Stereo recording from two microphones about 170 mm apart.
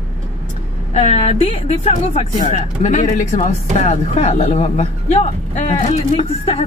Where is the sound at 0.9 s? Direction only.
35° left (ahead or behind).